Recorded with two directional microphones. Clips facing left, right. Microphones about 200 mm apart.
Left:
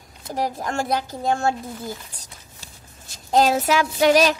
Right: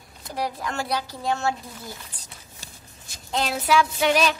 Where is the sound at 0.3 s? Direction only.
45° left (ahead or behind).